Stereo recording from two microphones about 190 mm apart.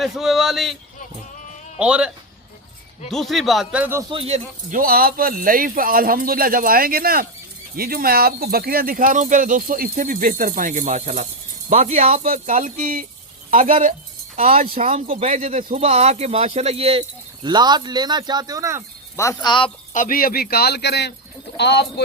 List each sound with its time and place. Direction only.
0.0 s speech: centre (ahead or behind)
1.8 s speech: 5° right (ahead or behind)
4.1 s speech: 30° right (ahead or behind)
4.7 s a man's voice: 50° right (ahead or behind)
12.3 s speech: 45° right (ahead or behind)
14.3 s a man's voice: 30° right (ahead or behind)
19.1 s speech: 15° left (ahead or behind)
19.9 s speech: 45° left (ahead or behind); by 22.0 s 65° left (ahead or behind)